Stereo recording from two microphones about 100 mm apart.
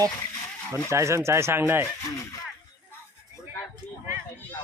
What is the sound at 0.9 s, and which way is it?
Speech, 30° right (ahead or behind).